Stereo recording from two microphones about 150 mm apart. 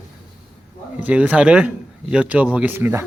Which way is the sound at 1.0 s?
10° right (ahead or behind).